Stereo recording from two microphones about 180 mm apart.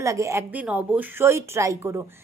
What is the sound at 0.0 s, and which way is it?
A woman's voice, 15° right (ahead or behind).